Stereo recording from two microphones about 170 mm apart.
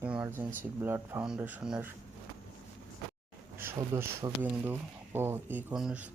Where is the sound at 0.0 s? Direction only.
10° right (ahead or behind).